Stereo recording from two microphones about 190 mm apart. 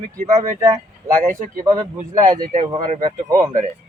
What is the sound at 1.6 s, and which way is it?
Speech, 15° right (ahead or behind).